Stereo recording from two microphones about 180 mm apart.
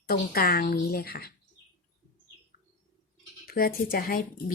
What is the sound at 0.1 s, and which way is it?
Speech, 55° left (ahead or behind).